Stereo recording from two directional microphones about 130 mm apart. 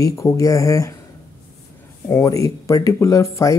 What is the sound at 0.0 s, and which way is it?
Speech, 25° left (ahead or behind).